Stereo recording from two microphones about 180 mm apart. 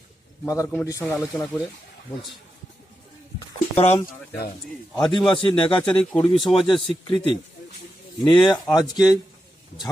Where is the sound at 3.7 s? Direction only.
35° left (ahead or behind).